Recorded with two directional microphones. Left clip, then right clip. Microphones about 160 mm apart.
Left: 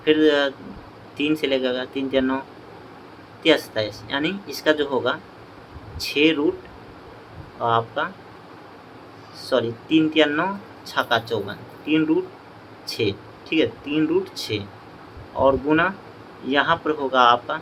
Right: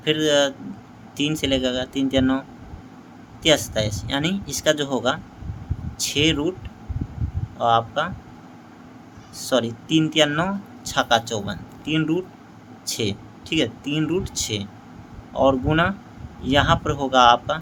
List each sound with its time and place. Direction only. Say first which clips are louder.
0.0 s speech: left 1 dB; 35° right (ahead or behind)
3.4 s speech: even; 40° right (ahead or behind)
7.6 s speech: right 2 dB; 40° right (ahead or behind)
9.5 s speech: left 1 dB; 45° right (ahead or behind)